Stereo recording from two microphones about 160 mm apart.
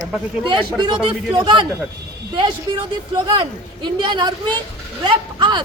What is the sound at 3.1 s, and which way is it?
A woman's voice, 30° right (ahead or behind).